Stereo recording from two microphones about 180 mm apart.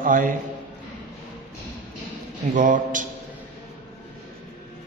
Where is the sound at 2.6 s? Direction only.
45° right (ahead or behind).